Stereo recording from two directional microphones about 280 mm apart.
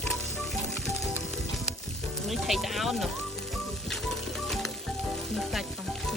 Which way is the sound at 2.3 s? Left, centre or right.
Centre.